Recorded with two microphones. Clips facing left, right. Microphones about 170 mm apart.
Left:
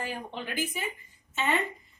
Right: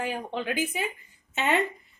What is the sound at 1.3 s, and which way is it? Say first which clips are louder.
Speech: right 3 dB; 70° right (ahead or behind).